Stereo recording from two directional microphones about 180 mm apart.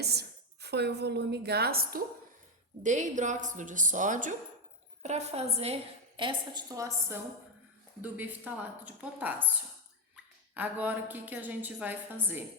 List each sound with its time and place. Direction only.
0.0 s a woman's voice: 65° right (ahead or behind)
2.8 s a woman's voice: 45° right (ahead or behind); by 9.3 s 10° right (ahead or behind)
10.5 s a woman's voice: 10° right (ahead or behind)